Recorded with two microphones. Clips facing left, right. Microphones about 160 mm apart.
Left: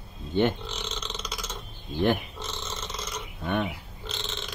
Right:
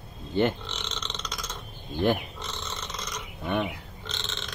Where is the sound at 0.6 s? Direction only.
10° left (ahead or behind).